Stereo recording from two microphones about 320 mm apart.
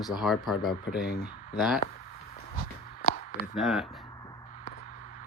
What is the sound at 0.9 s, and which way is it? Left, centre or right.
Speech, left.